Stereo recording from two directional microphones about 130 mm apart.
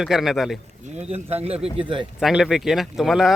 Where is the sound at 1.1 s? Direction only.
50° right (ahead or behind).